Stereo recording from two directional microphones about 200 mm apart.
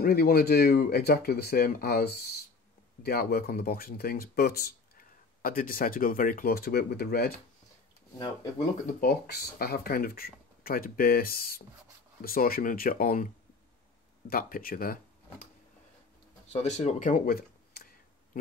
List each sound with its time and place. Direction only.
0.0 s speech: 50° left (ahead or behind)
8.8 s speech: 50° left (ahead or behind)
14.3 s speech: 45° left (ahead or behind)
16.4 s a sound: 35° left (ahead or behind)